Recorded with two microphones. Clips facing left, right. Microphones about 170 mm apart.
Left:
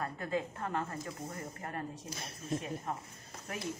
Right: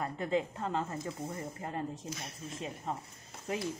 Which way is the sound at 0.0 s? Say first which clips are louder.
Right 3 dB; 20° right (ahead or behind).